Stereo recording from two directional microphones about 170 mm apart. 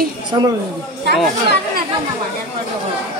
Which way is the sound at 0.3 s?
25° right (ahead or behind).